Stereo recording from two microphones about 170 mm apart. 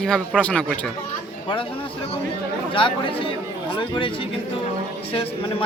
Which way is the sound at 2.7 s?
30° left (ahead or behind).